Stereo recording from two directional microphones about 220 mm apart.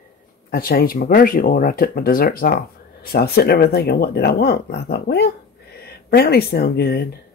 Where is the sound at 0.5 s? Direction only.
45° left (ahead or behind).